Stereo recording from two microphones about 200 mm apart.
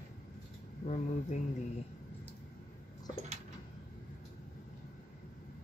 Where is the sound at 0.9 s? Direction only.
35° left (ahead or behind).